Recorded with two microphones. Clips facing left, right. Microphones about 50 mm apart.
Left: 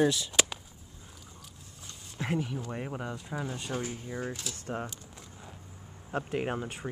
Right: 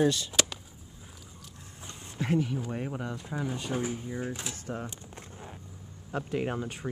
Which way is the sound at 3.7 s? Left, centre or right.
Centre.